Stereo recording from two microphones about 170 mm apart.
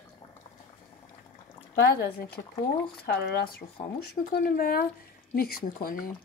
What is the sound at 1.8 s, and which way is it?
Speech, 65° left (ahead or behind).